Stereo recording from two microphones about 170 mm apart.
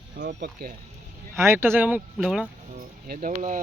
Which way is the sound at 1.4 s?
15° right (ahead or behind).